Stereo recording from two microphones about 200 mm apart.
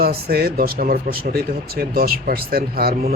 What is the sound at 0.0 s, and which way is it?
Speech, 50° right (ahead or behind).